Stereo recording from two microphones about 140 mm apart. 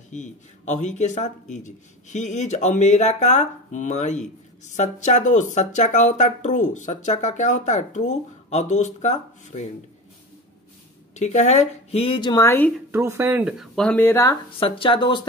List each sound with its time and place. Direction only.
0.1 s speech: 60° left (ahead or behind)
11.1 s speech: 55° left (ahead or behind); by 12.4 s 30° left (ahead or behind)
12.4 s speech: 15° left (ahead or behind)
12.9 s speech: 20° right (ahead or behind); by 14.1 s 5° left (ahead or behind)
14.6 s speech: 35° left (ahead or behind)